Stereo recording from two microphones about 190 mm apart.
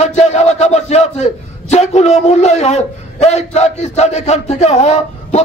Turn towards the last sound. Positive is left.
turn(degrees=35)  # may be behind; listen again after turning